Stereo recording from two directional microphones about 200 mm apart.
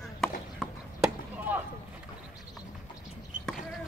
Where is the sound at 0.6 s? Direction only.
5° right (ahead or behind).